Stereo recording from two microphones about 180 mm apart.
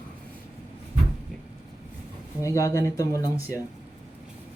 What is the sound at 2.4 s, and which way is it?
Speech, 20° left (ahead or behind).